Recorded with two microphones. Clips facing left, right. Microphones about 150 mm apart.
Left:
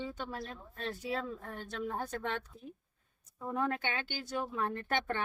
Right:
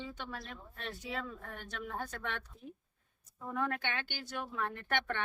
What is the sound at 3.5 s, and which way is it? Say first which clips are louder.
Speech: left 2 dB; 30° left (ahead or behind).